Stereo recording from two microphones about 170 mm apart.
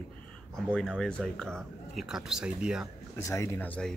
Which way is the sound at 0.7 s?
5° left (ahead or behind).